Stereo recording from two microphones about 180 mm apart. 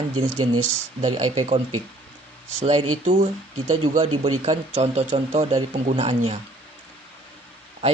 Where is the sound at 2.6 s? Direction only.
35° right (ahead or behind).